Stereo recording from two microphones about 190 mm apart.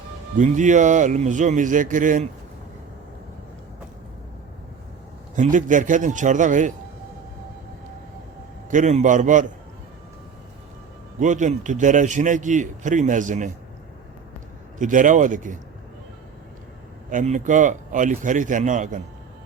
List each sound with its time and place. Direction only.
0.3 s a man's voice: 40° right (ahead or behind)
5.4 s a man's voice: 40° right (ahead or behind)
8.7 s a man's voice: 40° right (ahead or behind)
11.2 s a man's voice: 40° right (ahead or behind)
14.8 s speech: 45° right (ahead or behind)
17.1 s speech: 40° right (ahead or behind)